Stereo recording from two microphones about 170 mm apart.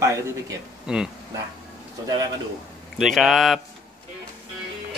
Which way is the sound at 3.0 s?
Centre (ahead or behind).